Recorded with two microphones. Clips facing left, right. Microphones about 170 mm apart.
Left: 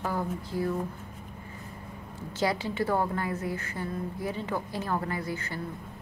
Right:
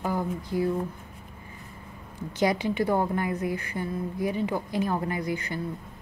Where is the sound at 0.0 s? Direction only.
15° right (ahead or behind).